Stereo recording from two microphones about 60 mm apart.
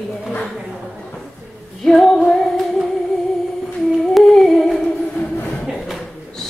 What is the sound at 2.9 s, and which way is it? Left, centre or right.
Humming, centre.